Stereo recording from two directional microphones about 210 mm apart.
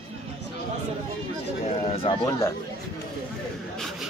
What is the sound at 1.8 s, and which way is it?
Speech, 25° left (ahead or behind).